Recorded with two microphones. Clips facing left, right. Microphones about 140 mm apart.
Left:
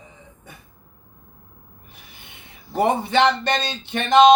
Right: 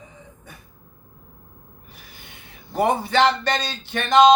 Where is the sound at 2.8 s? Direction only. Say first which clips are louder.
Left 1 dB; 25° left (ahead or behind).